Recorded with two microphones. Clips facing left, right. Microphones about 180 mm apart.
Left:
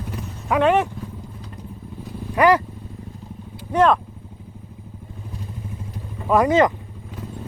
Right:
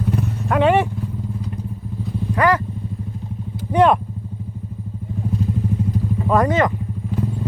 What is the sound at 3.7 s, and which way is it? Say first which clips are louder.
Vehicle: right 2 dB; 10° right (ahead or behind).